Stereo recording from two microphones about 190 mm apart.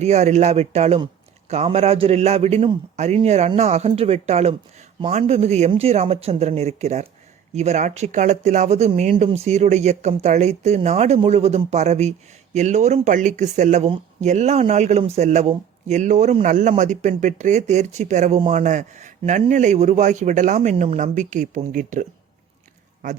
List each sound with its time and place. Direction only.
0.0 s speech: 35° right (ahead or behind)
23.0 s a man's voice: 45° right (ahead or behind)